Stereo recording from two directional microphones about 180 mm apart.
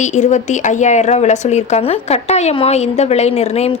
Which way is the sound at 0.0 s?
40° left (ahead or behind).